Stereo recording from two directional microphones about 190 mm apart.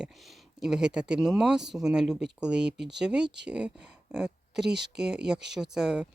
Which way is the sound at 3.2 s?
65° right (ahead or behind).